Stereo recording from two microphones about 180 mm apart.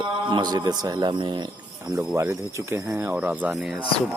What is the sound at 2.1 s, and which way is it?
Speech, 15° right (ahead or behind).